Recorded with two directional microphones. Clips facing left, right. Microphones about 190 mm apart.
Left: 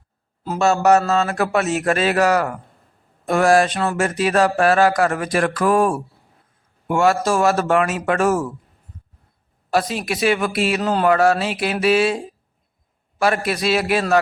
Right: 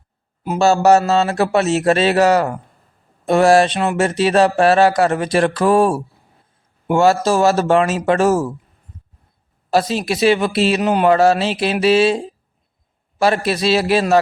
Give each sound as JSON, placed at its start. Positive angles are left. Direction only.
{"t": 0.6, "sound": "speech", "side_deg": -30}
{"t": 9.6, "sound": "speech", "side_deg": -30}